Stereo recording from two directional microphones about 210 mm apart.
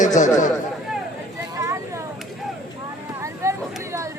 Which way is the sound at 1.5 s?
15° right (ahead or behind).